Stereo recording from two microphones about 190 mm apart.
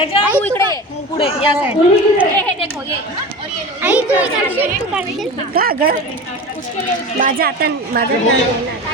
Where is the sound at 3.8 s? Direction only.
5° right (ahead or behind).